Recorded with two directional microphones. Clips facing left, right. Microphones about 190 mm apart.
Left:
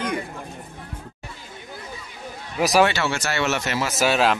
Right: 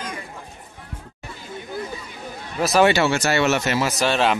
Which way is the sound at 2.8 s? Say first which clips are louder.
Right 6 dB; 10° right (ahead or behind).